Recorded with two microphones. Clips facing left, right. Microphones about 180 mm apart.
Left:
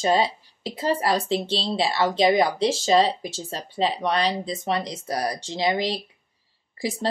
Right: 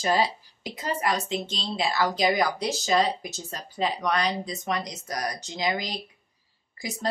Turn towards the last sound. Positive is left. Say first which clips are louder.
# left 7 dB
turn(degrees=30)  # may be behind; listen again after turning